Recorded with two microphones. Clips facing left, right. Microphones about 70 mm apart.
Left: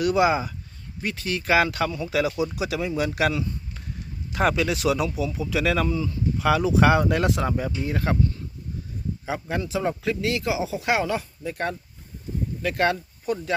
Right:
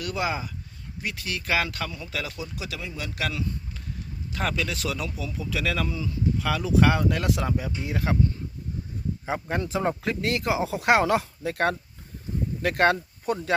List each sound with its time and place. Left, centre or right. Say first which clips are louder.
0.0 s speech: left 8 dB; centre
7.9 s speech: left 1 dB; centre
9.2 s speech: even; right
12.6 s speech: right 2 dB; right